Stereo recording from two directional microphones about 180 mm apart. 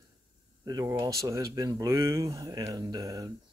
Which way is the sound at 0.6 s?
20° right (ahead or behind).